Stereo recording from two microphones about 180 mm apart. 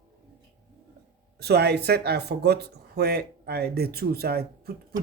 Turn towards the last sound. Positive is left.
turn(degrees=-60)  # may be behind; listen again after turning